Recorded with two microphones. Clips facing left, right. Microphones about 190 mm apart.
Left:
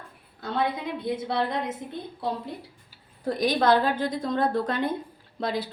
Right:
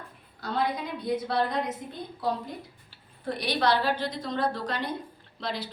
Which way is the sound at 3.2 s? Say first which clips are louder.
Left 4 dB; 45° left (ahead or behind).